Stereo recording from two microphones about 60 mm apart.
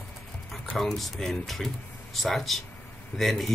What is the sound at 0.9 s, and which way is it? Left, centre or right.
Speech, centre.